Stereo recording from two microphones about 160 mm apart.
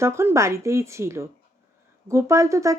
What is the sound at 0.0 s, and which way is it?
A woman's voice, 15° right (ahead or behind).